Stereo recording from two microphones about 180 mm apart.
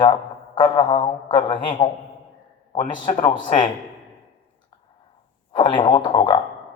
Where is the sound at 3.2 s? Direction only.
25° left (ahead or behind).